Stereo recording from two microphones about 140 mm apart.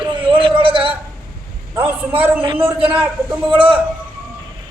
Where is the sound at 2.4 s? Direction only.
35° right (ahead or behind).